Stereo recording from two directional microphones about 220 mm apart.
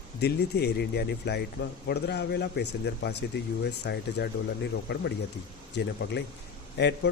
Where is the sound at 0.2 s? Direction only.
45° left (ahead or behind).